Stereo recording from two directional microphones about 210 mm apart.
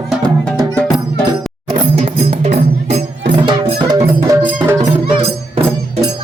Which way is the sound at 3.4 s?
20° right (ahead or behind).